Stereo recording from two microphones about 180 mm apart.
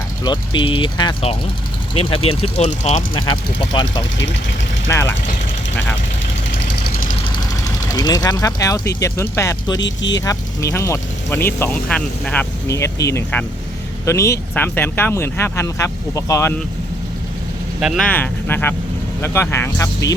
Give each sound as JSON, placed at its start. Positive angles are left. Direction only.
{"t": 0.3, "sound": "speech", "side_deg": 25}
{"t": 3.7, "sound": "speech", "side_deg": 25}
{"t": 4.9, "sound": "speech", "side_deg": 15}
{"t": 7.3, "sound": "vehicle", "side_deg": 20}
{"t": 9.0, "sound": "speech", "side_deg": 15}
{"t": 9.8, "sound": "speech", "side_deg": 85}
{"t": 10.2, "sound": "speech", "side_deg": 15}
{"t": 17.7, "sound": "speech", "side_deg": 0}